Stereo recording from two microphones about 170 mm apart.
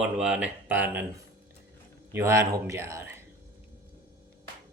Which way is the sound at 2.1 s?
15° right (ahead or behind).